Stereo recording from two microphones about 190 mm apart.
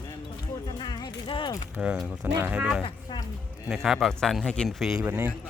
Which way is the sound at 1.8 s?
5° right (ahead or behind).